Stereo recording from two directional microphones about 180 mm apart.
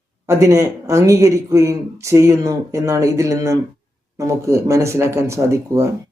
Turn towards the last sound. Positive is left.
turn(degrees=-15)  # may be behind; listen again after turning